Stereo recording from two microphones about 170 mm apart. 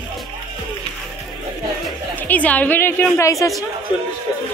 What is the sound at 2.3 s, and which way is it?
A woman's voice, 10° left (ahead or behind).